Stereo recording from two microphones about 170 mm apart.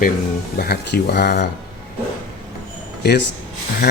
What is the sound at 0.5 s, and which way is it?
Speech, 70° left (ahead or behind).